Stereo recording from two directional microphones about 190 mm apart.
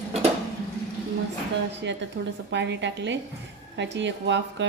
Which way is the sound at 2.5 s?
70° right (ahead or behind).